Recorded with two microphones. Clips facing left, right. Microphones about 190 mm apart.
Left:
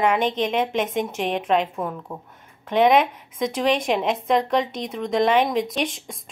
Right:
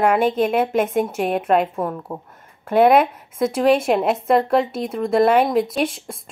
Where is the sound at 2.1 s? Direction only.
25° right (ahead or behind).